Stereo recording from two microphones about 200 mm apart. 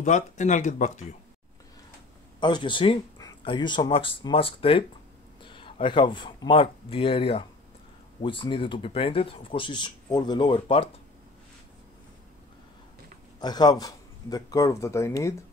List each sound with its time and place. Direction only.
0.0 s speech: 35° left (ahead or behind)
2.4 s speech: 25° left (ahead or behind)
13.4 s speech: 20° left (ahead or behind)